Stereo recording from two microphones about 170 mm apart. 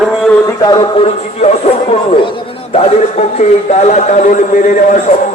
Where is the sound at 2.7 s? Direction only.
40° left (ahead or behind).